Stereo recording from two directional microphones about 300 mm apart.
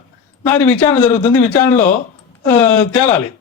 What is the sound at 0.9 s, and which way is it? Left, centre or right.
A man's voice, centre.